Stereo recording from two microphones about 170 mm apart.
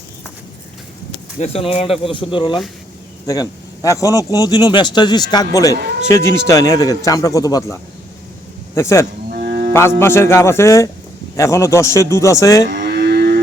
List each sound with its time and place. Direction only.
1.4 s a man's voice: 35° left (ahead or behind); by 9.0 s 15° left (ahead or behind)
9.3 s a sound: 65° right (ahead or behind)
10.0 s a man's voice: 15° left (ahead or behind)
12.6 s livestock: 55° right (ahead or behind)